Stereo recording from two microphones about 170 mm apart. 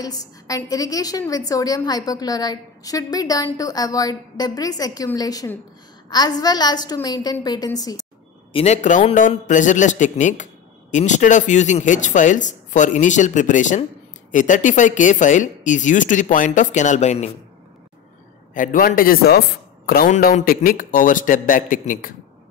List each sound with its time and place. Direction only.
0.0 s a woman's voice: 20° left (ahead or behind)
8.5 s speech: 45° left (ahead or behind)
18.5 s a man's voice: 50° left (ahead or behind)